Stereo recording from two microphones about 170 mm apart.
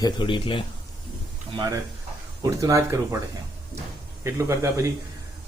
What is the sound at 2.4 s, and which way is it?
Speech, 20° right (ahead or behind).